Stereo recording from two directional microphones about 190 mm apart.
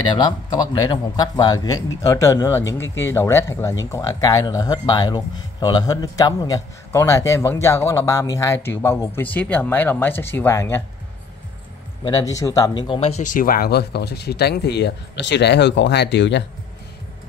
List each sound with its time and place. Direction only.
0.1 s a man's voice: 25° left (ahead or behind)
12.0 s speech: 20° left (ahead or behind); by 16.4 s 65° left (ahead or behind)